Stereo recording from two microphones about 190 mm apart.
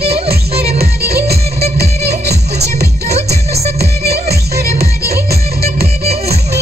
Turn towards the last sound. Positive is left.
turn(degrees=-55)  # may be behind; listen again after turning